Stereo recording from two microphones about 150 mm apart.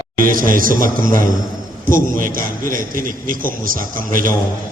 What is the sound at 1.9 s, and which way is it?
A man's voice, 65° right (ahead or behind).